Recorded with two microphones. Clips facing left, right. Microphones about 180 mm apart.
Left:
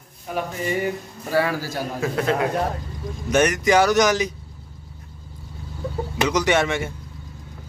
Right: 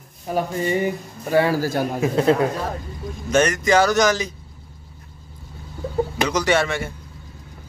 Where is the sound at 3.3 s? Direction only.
15° left (ahead or behind).